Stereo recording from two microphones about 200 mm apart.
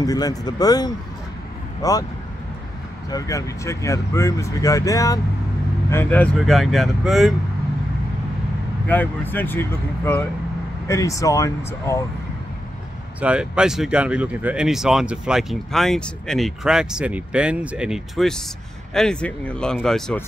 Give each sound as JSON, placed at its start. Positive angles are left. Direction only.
{"t": 0.0, "sound": "speech", "side_deg": 20}
{"t": 3.1, "sound": "speech", "side_deg": 15}
{"t": 8.8, "sound": "speech", "side_deg": 10}
{"t": 13.2, "sound": "speech", "side_deg": -5}